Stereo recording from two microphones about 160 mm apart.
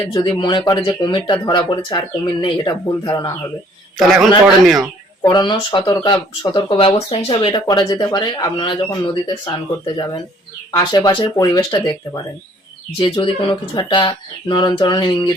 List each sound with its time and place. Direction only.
0.1 s speech: 30° left (ahead or behind)
3.9 s a man's voice: centre (ahead or behind)
5.2 s speech: 25° left (ahead or behind)